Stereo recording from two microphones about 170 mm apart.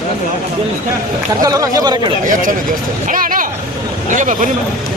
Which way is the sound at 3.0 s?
55° right (ahead or behind).